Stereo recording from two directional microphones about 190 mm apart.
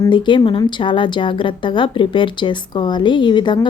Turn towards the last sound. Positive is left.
turn(degrees=25)  # may be behind; listen again after turning